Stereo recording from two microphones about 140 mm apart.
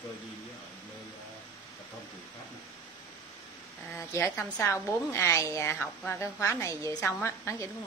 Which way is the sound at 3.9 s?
15° left (ahead or behind).